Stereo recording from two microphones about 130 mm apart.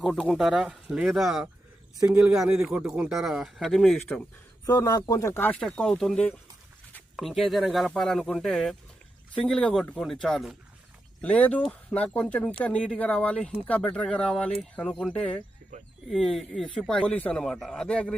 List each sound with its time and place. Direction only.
0.0 s speech: centre (ahead or behind)
4.6 s speech: 20° left (ahead or behind)
15.7 s speech: 70° right (ahead or behind)
16.0 s speech: centre (ahead or behind)